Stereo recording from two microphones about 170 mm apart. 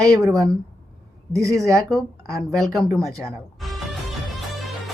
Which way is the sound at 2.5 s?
Centre (ahead or behind).